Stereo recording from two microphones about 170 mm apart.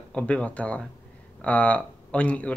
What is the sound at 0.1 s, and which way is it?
Speech, 5° left (ahead or behind).